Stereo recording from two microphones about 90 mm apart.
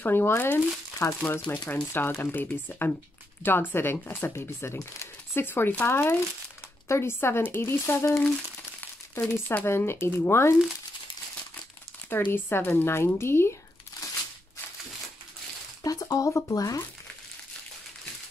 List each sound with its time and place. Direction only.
0.0 s speech: 25° left (ahead or behind)
9.3 s speech: 25° left (ahead or behind)
12.1 s speech: 20° left (ahead or behind)
15.8 s speech: 40° left (ahead or behind)